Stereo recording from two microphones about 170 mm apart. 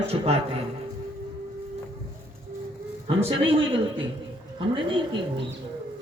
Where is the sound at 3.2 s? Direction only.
30° right (ahead or behind).